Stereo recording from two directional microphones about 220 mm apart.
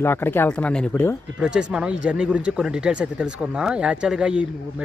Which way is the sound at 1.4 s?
5° right (ahead or behind).